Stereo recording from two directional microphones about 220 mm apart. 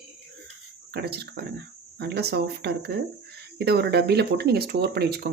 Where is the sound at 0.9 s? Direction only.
45° right (ahead or behind).